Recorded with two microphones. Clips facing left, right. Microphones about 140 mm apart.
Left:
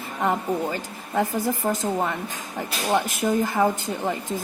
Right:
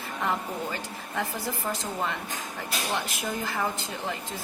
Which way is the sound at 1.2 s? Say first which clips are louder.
Left 8 dB; 45° left (ahead or behind).